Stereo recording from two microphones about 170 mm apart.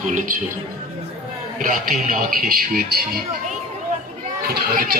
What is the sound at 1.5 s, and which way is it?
A man's voice, 50° right (ahead or behind).